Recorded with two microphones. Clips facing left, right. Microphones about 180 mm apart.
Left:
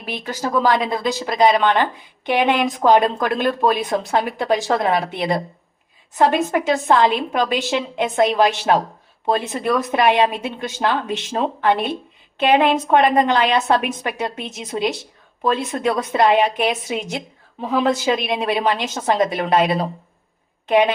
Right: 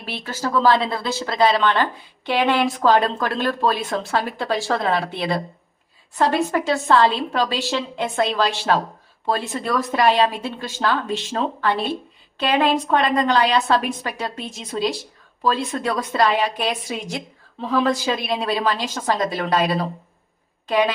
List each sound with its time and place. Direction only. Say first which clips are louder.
0.0 s speech: left 2 dB; 15° left (ahead or behind)
6.5 s a woman's voice: left 1 dB; 15° left (ahead or behind)